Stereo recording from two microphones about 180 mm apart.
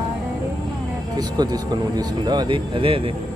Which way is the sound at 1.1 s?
20° right (ahead or behind).